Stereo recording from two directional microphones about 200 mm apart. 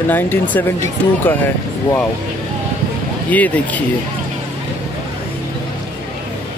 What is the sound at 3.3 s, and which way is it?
Speech, 10° left (ahead or behind).